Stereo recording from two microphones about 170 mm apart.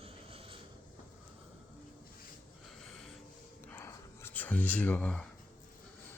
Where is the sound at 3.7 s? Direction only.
15° left (ahead or behind).